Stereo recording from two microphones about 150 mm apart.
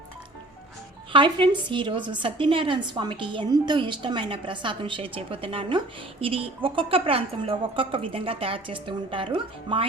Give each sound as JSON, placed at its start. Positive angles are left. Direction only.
{"t": 1.1, "sound": "a woman's voice", "side_deg": -35}